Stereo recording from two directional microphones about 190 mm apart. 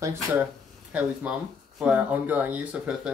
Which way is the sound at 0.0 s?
10° right (ahead or behind).